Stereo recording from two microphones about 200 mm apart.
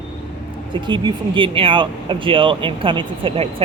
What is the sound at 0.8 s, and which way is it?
Speech, 25° right (ahead or behind).